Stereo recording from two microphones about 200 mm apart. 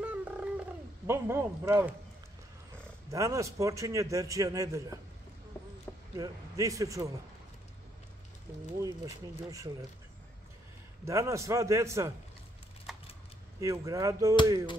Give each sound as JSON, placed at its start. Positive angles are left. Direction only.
{"t": 0.0, "sound": "wild animals", "side_deg": -5}
{"t": 1.0, "sound": "a man's voice", "side_deg": -10}
{"t": 3.1, "sound": "a man's voice", "side_deg": -15}
{"t": 6.1, "sound": "a man's voice", "side_deg": -15}
{"t": 8.7, "sound": "a man's voice", "side_deg": -15}
{"t": 11.1, "sound": "a man's voice", "side_deg": -15}
{"t": 13.6, "sound": "a man's voice", "side_deg": -15}